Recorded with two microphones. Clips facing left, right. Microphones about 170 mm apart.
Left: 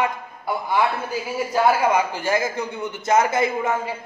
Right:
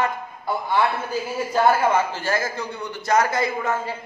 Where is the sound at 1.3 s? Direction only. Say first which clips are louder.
Even; 10° left (ahead or behind).